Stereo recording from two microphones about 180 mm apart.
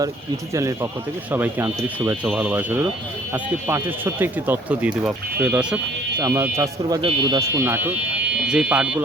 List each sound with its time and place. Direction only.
0.5 s speech: 15° right (ahead or behind)
7.0 s speech: 25° right (ahead or behind); by 9.0 s 5° right (ahead or behind)